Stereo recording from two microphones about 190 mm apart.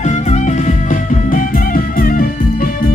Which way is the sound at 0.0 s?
35° left (ahead or behind).